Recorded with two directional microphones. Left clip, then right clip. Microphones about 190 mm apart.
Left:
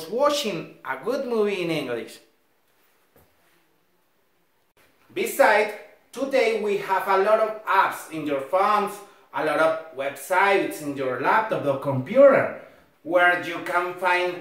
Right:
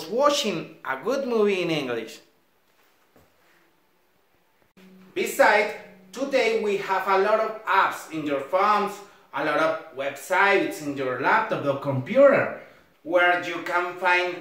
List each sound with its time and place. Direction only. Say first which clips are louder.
0.0 s speech: right 1 dB; 20° right (ahead or behind)
5.1 s speech: even; centre (ahead or behind)